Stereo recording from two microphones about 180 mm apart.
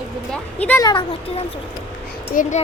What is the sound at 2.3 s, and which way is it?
Speech, 50° left (ahead or behind).